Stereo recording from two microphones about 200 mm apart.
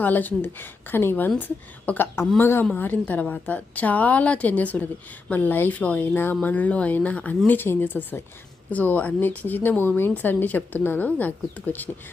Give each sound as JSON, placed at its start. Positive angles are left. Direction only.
{"t": 0.0, "sound": "a woman's voice", "side_deg": 10}